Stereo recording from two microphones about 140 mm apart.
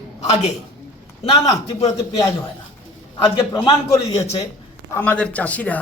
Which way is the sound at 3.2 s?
35° left (ahead or behind).